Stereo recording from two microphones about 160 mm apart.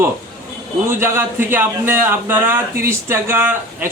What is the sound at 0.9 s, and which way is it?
Speech, 15° right (ahead or behind).